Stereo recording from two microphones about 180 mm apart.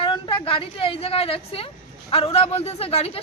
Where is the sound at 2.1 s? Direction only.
35° left (ahead or behind).